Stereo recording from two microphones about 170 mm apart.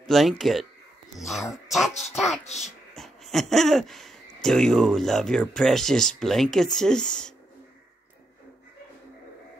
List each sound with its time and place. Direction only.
0.0 s speech: centre (ahead or behind)
2.4 s a child's voice: 40° left (ahead or behind)
3.0 s speech: centre (ahead or behind)